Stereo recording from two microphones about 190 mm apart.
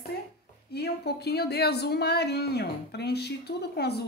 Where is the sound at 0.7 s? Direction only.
60° left (ahead or behind).